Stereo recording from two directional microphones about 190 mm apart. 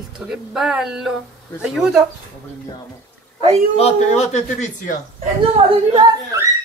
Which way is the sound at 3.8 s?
35° left (ahead or behind).